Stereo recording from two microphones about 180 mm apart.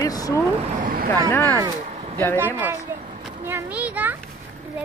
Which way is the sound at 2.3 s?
10° right (ahead or behind).